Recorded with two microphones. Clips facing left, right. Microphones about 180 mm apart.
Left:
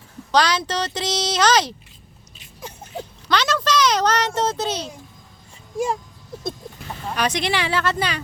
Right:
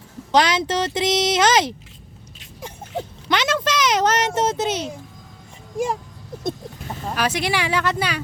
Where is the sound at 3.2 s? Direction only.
20° right (ahead or behind).